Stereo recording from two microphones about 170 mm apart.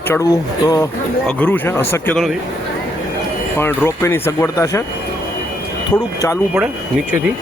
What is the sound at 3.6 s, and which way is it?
A man's voice, 15° left (ahead or behind).